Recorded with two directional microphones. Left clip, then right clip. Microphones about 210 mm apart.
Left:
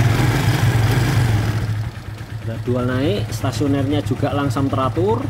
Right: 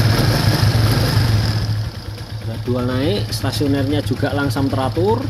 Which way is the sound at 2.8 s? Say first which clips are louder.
Right 1 dB; 5° left (ahead or behind).